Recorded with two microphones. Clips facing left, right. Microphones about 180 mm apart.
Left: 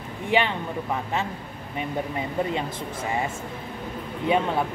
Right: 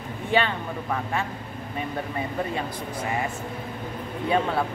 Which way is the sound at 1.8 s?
20° left (ahead or behind).